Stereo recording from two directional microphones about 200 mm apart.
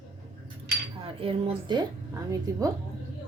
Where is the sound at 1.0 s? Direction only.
25° right (ahead or behind).